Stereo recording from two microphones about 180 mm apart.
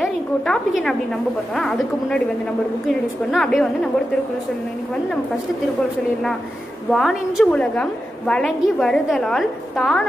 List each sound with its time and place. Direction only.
0.0 s a woman's voice: centre (ahead or behind)
3.3 s a woman's voice: centre (ahead or behind)
6.9 s a woman's voice: centre (ahead or behind)